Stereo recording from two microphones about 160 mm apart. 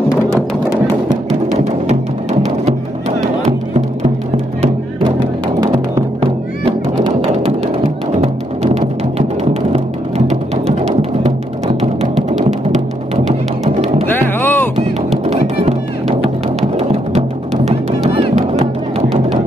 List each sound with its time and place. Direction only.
3.4 s music: 45° right (ahead or behind)
5.6 s music: 25° right (ahead or behind)
6.6 s music: 35° right (ahead or behind)
14.1 s music: 10° left (ahead or behind)
15.2 s music: 45° right (ahead or behind)